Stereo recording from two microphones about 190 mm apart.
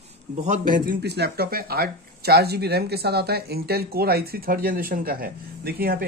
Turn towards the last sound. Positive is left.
turn(degrees=-50)  # may be behind; listen again after turning